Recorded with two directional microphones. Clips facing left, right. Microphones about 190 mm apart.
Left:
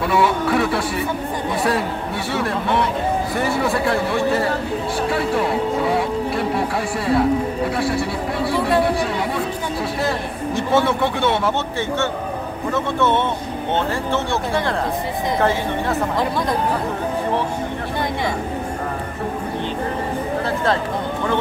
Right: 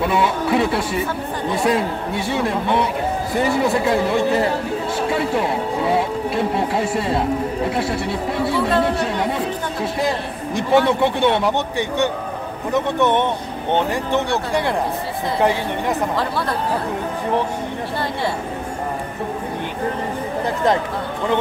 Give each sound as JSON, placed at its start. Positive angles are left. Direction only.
{"t": 0.0, "sound": "speech", "side_deg": -20}
{"t": 8.5, "sound": "speech", "side_deg": 15}
{"t": 10.0, "sound": "speech", "side_deg": -15}
{"t": 12.7, "sound": "speech", "side_deg": -15}
{"t": 16.2, "sound": "speech", "side_deg": 15}
{"t": 20.4, "sound": "speech", "side_deg": -15}